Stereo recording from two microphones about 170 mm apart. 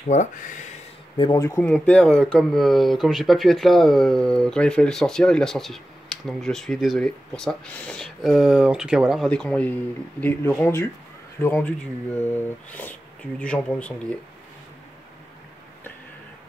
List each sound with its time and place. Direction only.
0.1 s speech: 45° left (ahead or behind)
1.1 s speech: 25° left (ahead or behind); by 13.9 s 5° left (ahead or behind)